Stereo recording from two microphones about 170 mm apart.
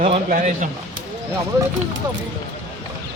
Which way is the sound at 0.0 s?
45° right (ahead or behind).